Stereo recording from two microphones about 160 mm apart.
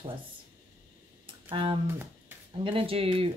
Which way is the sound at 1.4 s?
35° right (ahead or behind).